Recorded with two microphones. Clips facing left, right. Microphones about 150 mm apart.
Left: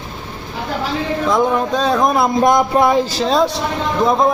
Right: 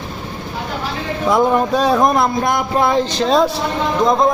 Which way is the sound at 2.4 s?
20° left (ahead or behind).